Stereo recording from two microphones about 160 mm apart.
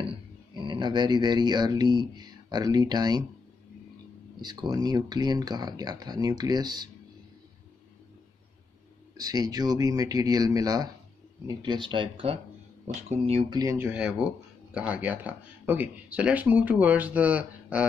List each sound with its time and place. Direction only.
0.6 s speech: 30° right (ahead or behind)
4.4 s speech: 25° right (ahead or behind)
9.1 s speech: 25° right (ahead or behind)
13.6 s speech: 15° right (ahead or behind)